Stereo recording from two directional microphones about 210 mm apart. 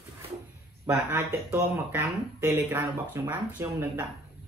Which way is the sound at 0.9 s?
10° right (ahead or behind).